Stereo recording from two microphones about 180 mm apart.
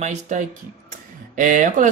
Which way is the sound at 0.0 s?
40° right (ahead or behind).